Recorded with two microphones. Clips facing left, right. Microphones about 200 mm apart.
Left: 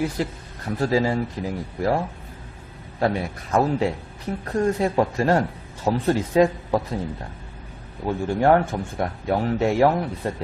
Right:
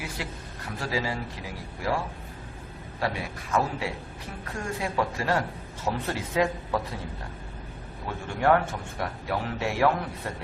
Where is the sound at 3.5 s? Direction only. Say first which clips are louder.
Left 7 dB; 45° left (ahead or behind).